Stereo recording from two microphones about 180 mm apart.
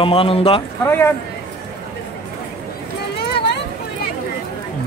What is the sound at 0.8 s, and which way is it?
Speech, 10° left (ahead or behind).